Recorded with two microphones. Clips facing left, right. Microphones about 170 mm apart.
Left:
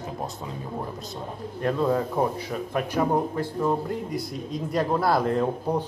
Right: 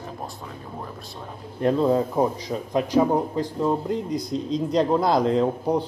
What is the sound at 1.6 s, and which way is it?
Speech, 25° right (ahead or behind).